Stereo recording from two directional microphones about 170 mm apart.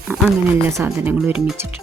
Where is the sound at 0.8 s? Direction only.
10° right (ahead or behind).